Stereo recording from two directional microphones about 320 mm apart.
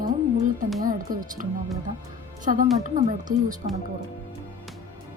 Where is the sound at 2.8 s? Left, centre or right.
Right.